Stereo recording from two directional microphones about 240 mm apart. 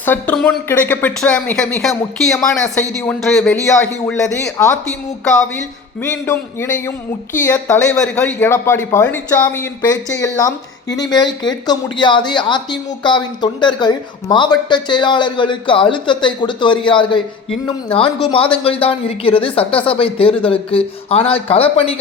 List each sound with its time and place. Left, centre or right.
0.0 s speech: centre
6.0 s a woman's voice: centre; by 21.9 s left